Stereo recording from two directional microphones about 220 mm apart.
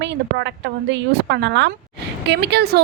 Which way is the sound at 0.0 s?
50° right (ahead or behind).